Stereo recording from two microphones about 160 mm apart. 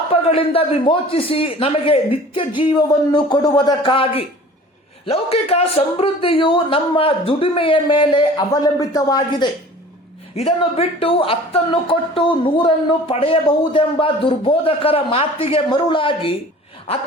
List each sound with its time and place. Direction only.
0.1 s speech: 35° left (ahead or behind)
10.3 s speech: 35° left (ahead or behind)